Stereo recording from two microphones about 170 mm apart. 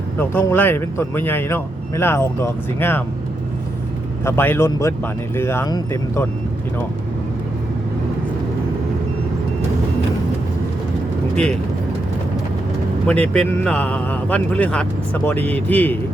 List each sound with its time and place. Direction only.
0.2 s a man's voice: 10° left (ahead or behind)
4.2 s a man's voice: 15° left (ahead or behind)
13.1 s a man's voice: 5° left (ahead or behind)